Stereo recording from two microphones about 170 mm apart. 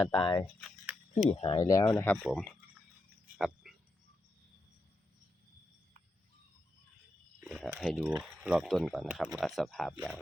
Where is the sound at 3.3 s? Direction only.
Centre (ahead or behind).